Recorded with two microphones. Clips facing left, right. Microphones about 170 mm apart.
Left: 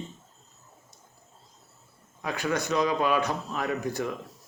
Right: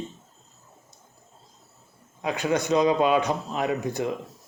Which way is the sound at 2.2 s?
20° right (ahead or behind).